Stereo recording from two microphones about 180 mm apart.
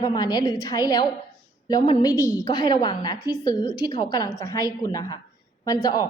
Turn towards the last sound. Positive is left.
turn(degrees=20)  # may be behind; listen again after turning